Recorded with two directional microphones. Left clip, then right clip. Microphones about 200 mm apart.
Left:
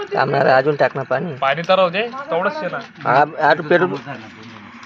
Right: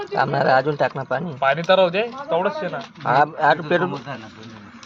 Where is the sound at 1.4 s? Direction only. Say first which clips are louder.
Even; 35° right (ahead or behind).